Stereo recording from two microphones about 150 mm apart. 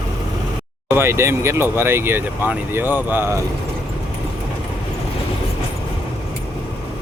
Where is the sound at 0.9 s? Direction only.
15° right (ahead or behind).